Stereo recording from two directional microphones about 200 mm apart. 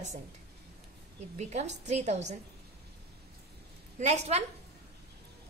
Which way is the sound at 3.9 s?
35° right (ahead or behind).